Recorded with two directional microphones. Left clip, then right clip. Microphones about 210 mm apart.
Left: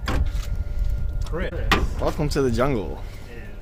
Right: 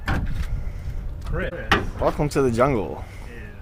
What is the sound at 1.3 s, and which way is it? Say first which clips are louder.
Speech: right 1 dB; 20° left (ahead or behind).